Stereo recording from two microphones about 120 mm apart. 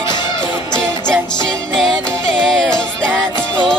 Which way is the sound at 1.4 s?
5° left (ahead or behind).